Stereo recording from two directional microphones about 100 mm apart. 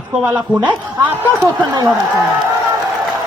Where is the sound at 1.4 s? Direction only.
40° right (ahead or behind).